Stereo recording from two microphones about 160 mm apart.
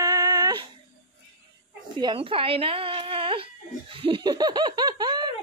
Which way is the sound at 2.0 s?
30° right (ahead or behind).